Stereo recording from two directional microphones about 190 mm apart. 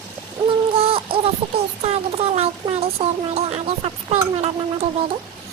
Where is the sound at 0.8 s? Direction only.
30° right (ahead or behind).